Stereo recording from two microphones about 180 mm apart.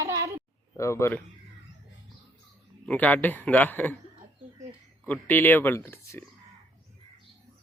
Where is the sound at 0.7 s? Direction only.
15° left (ahead or behind).